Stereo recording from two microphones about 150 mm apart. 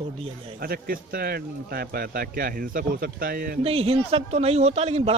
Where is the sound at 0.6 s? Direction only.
75° right (ahead or behind).